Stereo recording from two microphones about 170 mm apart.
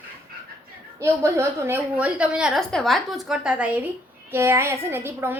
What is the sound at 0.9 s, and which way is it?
A child's voice, 15° right (ahead or behind).